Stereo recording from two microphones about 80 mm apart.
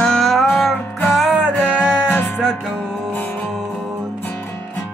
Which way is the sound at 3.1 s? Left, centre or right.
Left.